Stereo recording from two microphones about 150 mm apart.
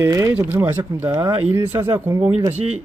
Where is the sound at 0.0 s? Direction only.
20° right (ahead or behind).